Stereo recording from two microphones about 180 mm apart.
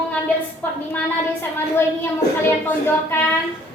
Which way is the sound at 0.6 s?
10° left (ahead or behind).